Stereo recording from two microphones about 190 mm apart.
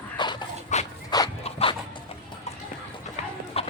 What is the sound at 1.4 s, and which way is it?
Zipper, 30° left (ahead or behind).